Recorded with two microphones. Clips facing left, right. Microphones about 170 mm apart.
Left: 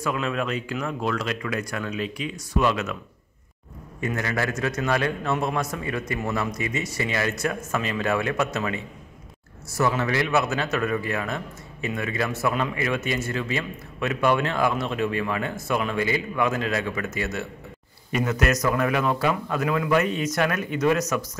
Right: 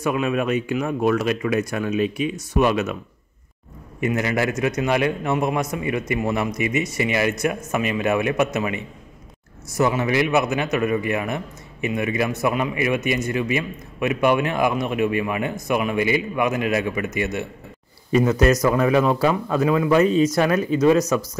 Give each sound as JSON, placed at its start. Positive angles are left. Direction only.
{"t": 0.0, "sound": "speech", "side_deg": -15}
{"t": 4.0, "sound": "a man's voice", "side_deg": -20}
{"t": 18.1, "sound": "speech", "side_deg": -30}